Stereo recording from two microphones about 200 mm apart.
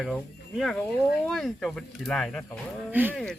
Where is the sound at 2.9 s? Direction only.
10° right (ahead or behind).